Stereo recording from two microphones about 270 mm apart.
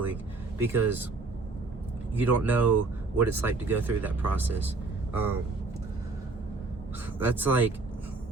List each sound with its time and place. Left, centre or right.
0.6 s speech: centre
2.1 s speech: centre
7.2 s speech: centre